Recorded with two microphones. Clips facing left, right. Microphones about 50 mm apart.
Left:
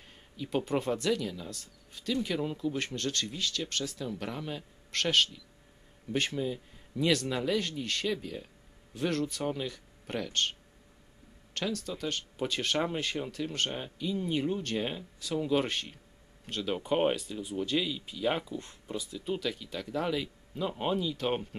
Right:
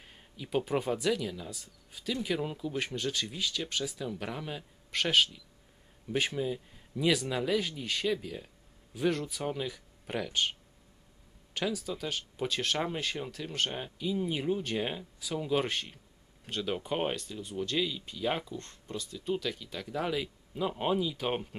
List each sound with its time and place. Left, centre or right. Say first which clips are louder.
0.0 s speech: left 4 dB; centre
11.5 s speech: right 1 dB; centre